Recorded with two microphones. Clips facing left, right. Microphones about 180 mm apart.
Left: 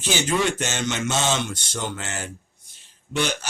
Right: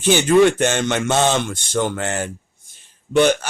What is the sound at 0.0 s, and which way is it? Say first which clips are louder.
A man's voice: right 10 dB; 55° right (ahead or behind).